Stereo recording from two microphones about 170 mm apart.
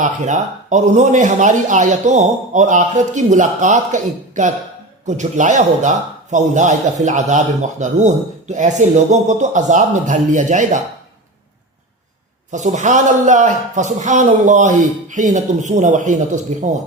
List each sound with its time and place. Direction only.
0.0 s speech: 45° right (ahead or behind)
12.5 s speech: 45° right (ahead or behind)